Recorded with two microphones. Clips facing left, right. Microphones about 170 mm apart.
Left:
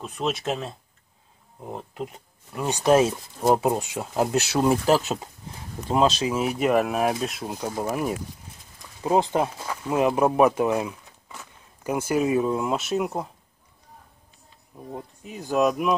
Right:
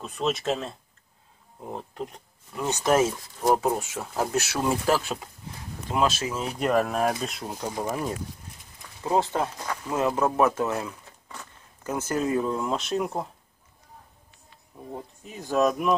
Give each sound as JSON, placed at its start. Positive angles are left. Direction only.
{"t": 0.0, "sound": "speech", "side_deg": 0}
{"t": 15.2, "sound": "speech", "side_deg": 0}